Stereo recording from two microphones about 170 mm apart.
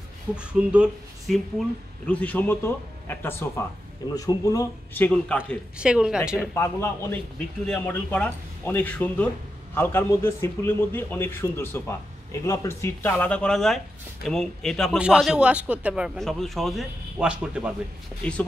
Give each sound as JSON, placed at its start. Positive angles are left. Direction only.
{"t": 0.4, "sound": "a man's voice", "side_deg": -5}
{"t": 5.8, "sound": "a man's voice", "side_deg": -5}
{"t": 6.4, "sound": "a man's voice", "side_deg": 15}
{"t": 18.2, "sound": "speech", "side_deg": 5}